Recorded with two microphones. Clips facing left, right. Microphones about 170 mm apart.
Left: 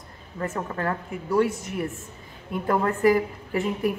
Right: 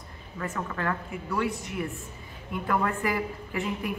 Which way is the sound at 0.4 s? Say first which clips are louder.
Left 3 dB; 35° left (ahead or behind).